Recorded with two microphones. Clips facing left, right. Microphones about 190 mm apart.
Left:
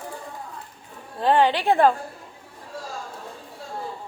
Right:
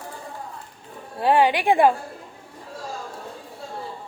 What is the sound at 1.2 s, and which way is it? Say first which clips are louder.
Speech: right 1 dB; 10° right (ahead or behind).